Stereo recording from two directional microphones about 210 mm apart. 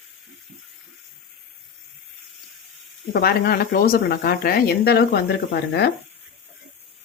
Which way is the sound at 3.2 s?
45° left (ahead or behind).